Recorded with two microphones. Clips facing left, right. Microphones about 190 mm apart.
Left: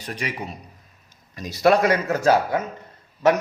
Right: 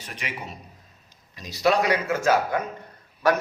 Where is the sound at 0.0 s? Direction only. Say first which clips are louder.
Left 6 dB; 40° left (ahead or behind).